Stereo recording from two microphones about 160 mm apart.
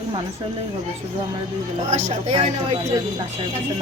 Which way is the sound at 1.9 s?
45° right (ahead or behind).